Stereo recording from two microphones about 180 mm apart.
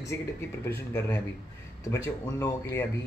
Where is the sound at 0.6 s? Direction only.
10° left (ahead or behind).